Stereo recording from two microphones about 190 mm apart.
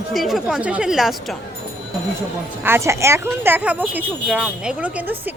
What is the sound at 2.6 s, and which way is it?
A woman's voice, 15° right (ahead or behind).